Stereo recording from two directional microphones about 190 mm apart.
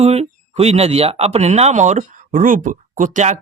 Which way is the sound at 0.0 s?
35° right (ahead or behind).